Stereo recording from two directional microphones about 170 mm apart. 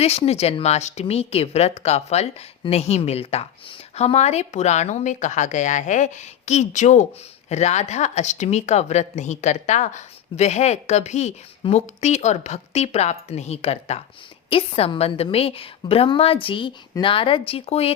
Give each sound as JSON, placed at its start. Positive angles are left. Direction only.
{"t": 0.0, "sound": "speech", "side_deg": 40}